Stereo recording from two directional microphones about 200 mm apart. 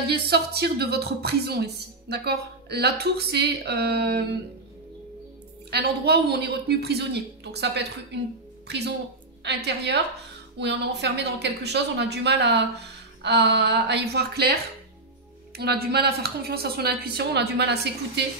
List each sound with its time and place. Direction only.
0.1 s a woman's voice: 55° right (ahead or behind)
5.7 s a woman's voice: 55° right (ahead or behind)